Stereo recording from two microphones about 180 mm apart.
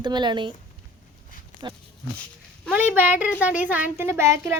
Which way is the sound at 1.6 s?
25° right (ahead or behind).